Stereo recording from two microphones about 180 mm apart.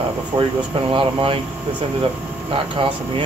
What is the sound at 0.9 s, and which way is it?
Speech, 30° right (ahead or behind).